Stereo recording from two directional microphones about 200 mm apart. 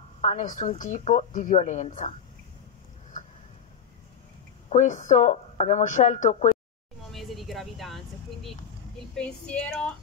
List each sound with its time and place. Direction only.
0.2 s a woman's voice: 35° left (ahead or behind)
4.6 s a woman's voice: 35° left (ahead or behind)
7.1 s vehicle: centre (ahead or behind)
9.1 s speech: 5° left (ahead or behind)